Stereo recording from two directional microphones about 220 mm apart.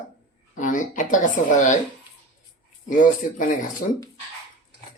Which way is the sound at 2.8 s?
35° left (ahead or behind).